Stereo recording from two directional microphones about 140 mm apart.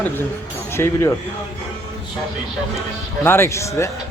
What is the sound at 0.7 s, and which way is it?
Speech, 20° left (ahead or behind).